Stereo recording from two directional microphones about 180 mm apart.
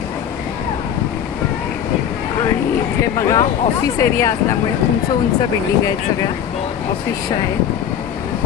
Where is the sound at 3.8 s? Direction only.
15° left (ahead or behind).